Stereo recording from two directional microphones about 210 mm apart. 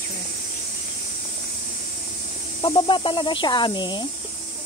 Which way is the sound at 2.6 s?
25° left (ahead or behind).